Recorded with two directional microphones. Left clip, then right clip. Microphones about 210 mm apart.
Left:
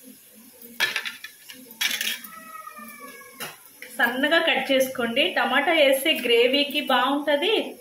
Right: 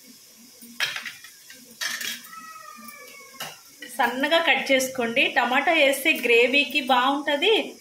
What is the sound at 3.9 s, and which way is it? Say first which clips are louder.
A woman's voice: left 1 dB; 55° right (ahead or behind).